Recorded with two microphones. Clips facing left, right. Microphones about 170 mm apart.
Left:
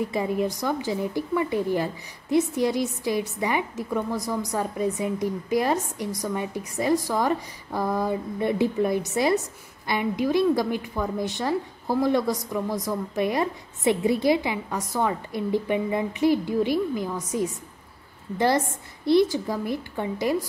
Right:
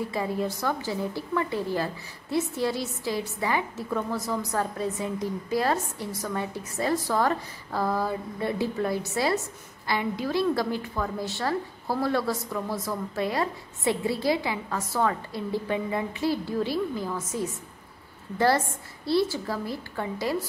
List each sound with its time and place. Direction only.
0.1 s a woman's voice: 15° left (ahead or behind)
19.0 s a woman's voice: 20° left (ahead or behind)